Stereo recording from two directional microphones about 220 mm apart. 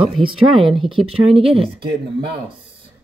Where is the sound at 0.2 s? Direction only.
25° right (ahead or behind).